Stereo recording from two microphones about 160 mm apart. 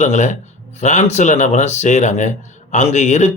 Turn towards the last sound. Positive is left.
turn(degrees=45)  # may be behind; listen again after turning